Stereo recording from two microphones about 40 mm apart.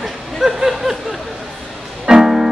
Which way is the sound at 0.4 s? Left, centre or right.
Centre.